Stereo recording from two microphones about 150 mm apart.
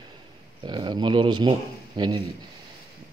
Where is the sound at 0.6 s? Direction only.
30° right (ahead or behind).